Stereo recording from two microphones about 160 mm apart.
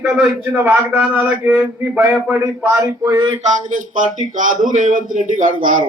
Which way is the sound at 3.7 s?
55° right (ahead or behind).